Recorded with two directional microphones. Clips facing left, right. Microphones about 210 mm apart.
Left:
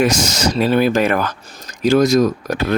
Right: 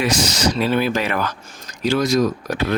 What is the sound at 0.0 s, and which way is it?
Speech, 45° left (ahead or behind).